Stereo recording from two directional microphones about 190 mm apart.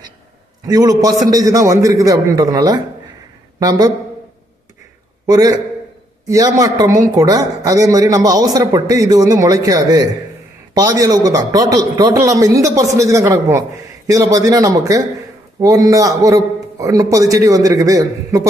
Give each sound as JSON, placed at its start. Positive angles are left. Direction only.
{"t": 0.7, "sound": "a man's voice", "side_deg": -20}
{"t": 5.2, "sound": "a man's voice", "side_deg": -20}